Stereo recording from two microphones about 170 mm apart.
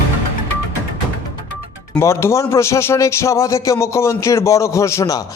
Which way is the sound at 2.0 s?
15° left (ahead or behind).